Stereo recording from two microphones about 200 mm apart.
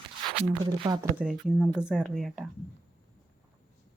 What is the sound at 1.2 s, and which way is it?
Speech, centre (ahead or behind).